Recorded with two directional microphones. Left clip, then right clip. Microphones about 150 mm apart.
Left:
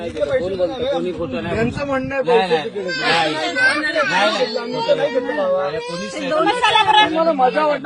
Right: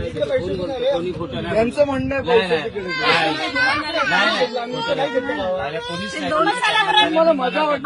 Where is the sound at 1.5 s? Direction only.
15° right (ahead or behind).